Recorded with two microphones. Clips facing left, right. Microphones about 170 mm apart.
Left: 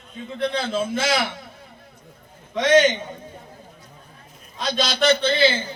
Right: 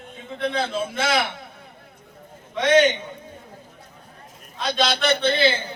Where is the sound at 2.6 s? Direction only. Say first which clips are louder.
Left 1 dB; 60° right (ahead or behind).